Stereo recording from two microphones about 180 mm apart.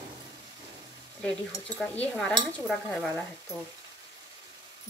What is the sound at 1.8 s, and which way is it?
Speech, 5° left (ahead or behind).